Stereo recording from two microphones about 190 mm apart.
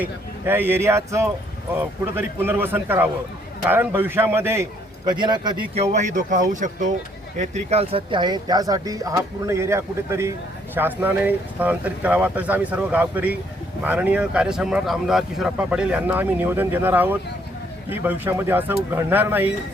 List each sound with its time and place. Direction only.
0.0 s speech: 10° right (ahead or behind)
5.0 s speech: 25° right (ahead or behind)